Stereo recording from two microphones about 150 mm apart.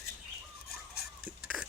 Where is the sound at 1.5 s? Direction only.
5° right (ahead or behind).